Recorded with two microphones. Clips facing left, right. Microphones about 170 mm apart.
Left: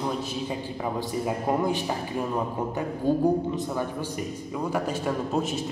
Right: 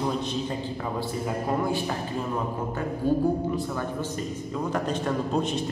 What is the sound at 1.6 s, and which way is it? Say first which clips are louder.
Speech: left 1 dB; 20° left (ahead or behind).